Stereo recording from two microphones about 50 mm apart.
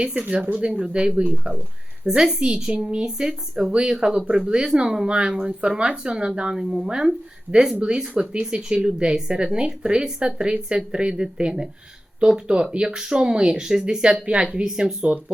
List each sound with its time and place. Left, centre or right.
0.2 s speech: right; by 14.9 s centre